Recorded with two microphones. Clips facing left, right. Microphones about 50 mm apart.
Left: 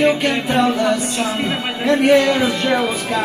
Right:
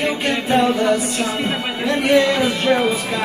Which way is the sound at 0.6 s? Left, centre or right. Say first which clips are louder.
Even; left.